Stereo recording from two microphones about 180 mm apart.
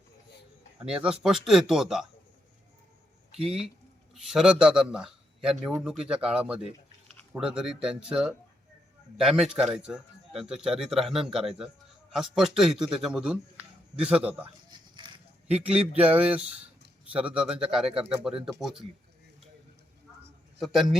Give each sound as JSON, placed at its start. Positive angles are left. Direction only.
{"t": 0.9, "sound": "a man's voice", "side_deg": -5}
{"t": 4.1, "sound": "a man's voice", "side_deg": 0}
{"t": 14.7, "sound": "a sound", "side_deg": -25}
{"t": 15.4, "sound": "a man's voice", "side_deg": -5}
{"t": 18.2, "sound": "a man's voice", "side_deg": -5}
{"t": 20.6, "sound": "a man's voice", "side_deg": 0}